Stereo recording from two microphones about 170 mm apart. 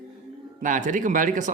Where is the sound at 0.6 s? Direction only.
50° right (ahead or behind).